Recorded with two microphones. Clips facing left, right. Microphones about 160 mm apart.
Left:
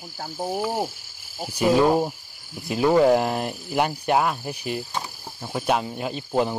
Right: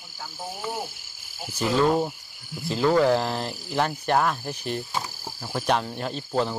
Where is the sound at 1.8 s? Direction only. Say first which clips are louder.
Left 2 dB; 15° left (ahead or behind).